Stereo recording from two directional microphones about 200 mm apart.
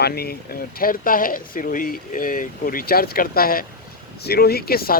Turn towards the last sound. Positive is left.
turn(degrees=50)  # may be behind; listen again after turning